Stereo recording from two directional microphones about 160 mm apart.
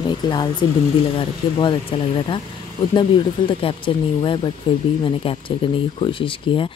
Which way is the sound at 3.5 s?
35° left (ahead or behind).